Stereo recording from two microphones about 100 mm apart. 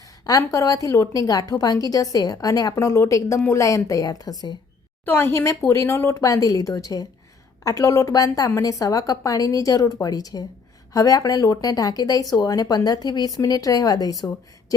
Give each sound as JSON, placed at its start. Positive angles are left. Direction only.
{"t": 0.3, "sound": "speech", "side_deg": 35}
{"t": 5.0, "sound": "speech", "side_deg": 20}